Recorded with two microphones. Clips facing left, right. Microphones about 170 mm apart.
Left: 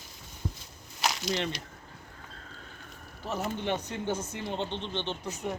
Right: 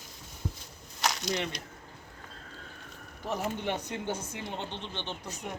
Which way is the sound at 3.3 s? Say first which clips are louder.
Left 1 dB; 10° right (ahead or behind).